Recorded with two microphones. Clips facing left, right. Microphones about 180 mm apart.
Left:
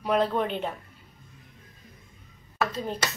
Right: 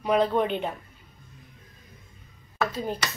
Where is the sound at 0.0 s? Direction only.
Centre (ahead or behind).